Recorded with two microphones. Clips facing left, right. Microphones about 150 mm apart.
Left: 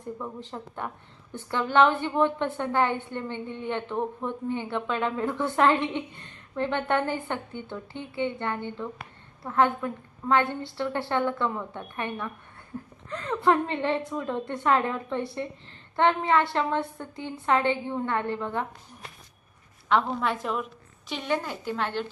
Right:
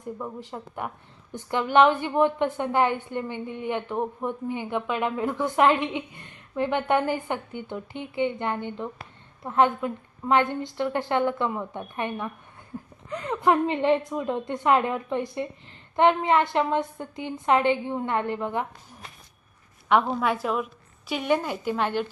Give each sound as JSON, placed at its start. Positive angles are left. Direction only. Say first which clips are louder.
{"t": 0.2, "sound": "a woman's voice", "louder": "right 1 dB", "side_deg": -10}
{"t": 19.9, "sound": "a woman's voice", "louder": "right 3 dB", "side_deg": -10}